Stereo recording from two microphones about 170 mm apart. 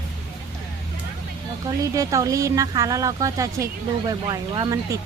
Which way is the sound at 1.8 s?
20° right (ahead or behind).